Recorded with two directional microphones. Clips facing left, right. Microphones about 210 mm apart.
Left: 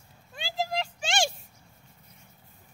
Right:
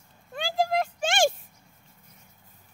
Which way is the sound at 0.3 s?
50° right (ahead or behind).